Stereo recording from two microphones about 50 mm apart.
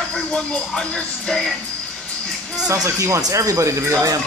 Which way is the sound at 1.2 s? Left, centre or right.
Centre.